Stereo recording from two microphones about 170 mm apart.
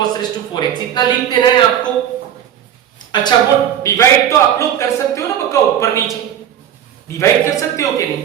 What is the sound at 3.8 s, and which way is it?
Speech, 20° left (ahead or behind).